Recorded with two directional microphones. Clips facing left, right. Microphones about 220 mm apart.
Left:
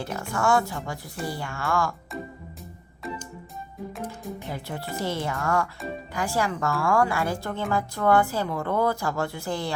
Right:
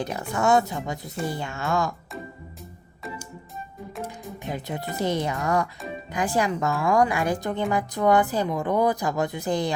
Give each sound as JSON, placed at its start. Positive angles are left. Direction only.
{"t": 0.0, "sound": "speech", "side_deg": -20}
{"t": 4.4, "sound": "speech", "side_deg": -20}